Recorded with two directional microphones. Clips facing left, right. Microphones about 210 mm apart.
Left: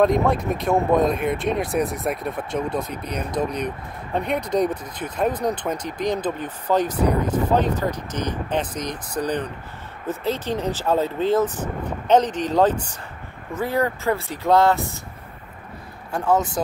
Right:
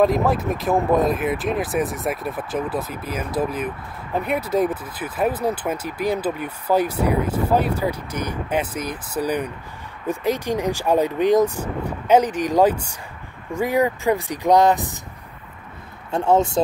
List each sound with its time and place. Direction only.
0.0 s speech: centre (ahead or behind)
16.1 s speech: 25° right (ahead or behind)